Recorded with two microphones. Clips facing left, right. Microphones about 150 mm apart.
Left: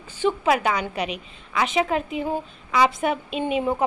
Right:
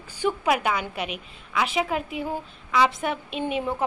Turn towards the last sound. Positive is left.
turn(degrees=0)  # may be behind; listen again after turning